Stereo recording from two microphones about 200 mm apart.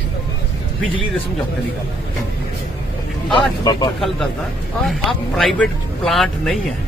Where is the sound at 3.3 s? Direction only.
20° left (ahead or behind).